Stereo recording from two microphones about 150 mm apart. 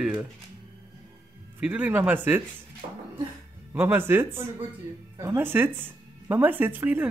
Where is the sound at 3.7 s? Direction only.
15° right (ahead or behind).